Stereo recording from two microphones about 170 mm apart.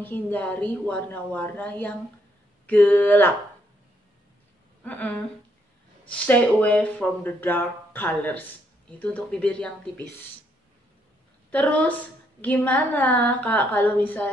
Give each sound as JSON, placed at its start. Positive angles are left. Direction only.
{"t": 0.0, "sound": "speech", "side_deg": 10}
{"t": 4.8, "sound": "speech", "side_deg": 10}
{"t": 11.5, "sound": "speech", "side_deg": 10}